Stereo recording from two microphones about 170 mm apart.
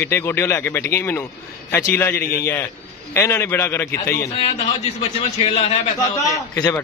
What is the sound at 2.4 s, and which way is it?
Speech, 15° left (ahead or behind).